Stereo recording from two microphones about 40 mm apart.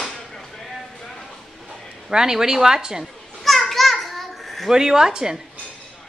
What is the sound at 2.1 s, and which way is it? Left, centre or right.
Speech, centre.